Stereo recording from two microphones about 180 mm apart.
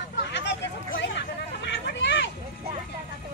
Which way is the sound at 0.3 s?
80° left.